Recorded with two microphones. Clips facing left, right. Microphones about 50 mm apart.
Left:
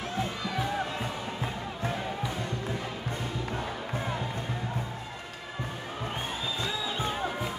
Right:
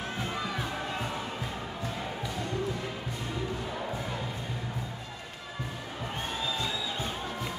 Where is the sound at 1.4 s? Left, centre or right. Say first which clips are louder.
Left 2 dB; left.